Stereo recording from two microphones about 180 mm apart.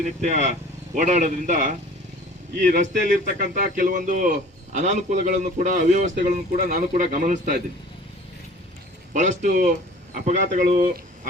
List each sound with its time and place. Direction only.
0.2 s a man's voice: 40° right (ahead or behind)
9.1 s a man's voice: 45° right (ahead or behind)